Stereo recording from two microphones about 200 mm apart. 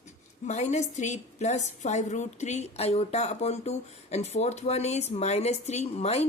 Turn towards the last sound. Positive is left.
turn(degrees=30)  # may be behind; listen again after turning